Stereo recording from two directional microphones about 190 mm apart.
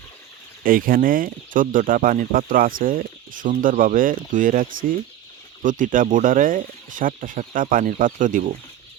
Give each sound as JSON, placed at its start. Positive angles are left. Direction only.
{"t": 0.6, "sound": "speech", "side_deg": -50}